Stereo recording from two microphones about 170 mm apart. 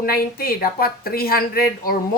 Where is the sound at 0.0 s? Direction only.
60° left (ahead or behind).